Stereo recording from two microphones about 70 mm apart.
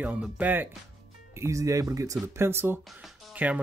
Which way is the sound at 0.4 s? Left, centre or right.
Right.